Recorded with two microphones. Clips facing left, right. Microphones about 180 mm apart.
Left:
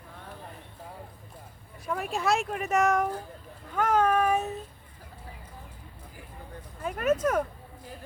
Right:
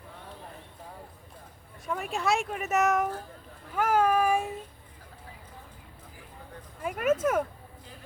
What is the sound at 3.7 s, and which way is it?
Child singing, 10° right (ahead or behind).